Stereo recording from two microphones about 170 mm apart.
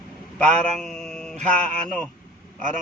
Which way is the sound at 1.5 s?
5° left (ahead or behind).